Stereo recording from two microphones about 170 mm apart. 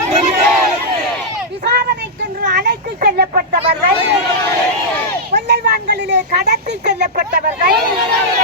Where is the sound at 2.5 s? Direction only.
70° right (ahead or behind).